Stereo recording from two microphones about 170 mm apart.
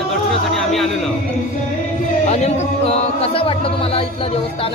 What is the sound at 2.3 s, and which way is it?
Speech, 40° left (ahead or behind).